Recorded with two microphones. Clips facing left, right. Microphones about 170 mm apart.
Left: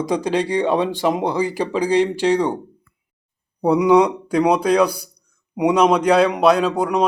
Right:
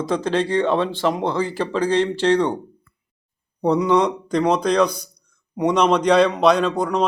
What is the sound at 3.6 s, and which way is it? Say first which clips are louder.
A man's voice: left 3 dB; 10° left (ahead or behind).